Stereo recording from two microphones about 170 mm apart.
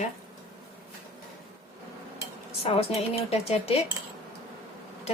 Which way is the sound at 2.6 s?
35° left (ahead or behind).